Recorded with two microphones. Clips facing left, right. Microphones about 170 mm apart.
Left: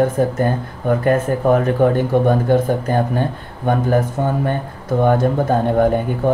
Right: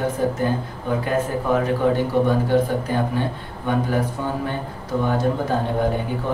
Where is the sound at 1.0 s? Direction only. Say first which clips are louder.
Left 7 dB; 50° left (ahead or behind).